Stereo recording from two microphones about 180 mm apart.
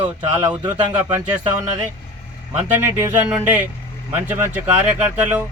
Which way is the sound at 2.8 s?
10° right (ahead or behind).